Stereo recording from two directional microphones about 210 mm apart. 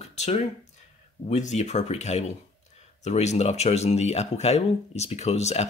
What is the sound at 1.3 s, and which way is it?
Speech, 35° left (ahead or behind).